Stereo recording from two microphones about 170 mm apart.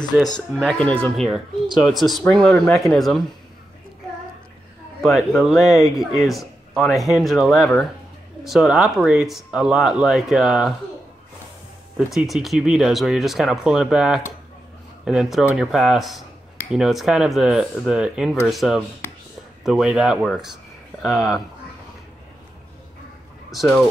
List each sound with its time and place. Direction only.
0.0 s speech: 25° left (ahead or behind)
0.6 s speech: 5° left (ahead or behind)
5.0 s speech: centre (ahead or behind)
12.1 s speech: centre (ahead or behind)
23.5 s speech: centre (ahead or behind)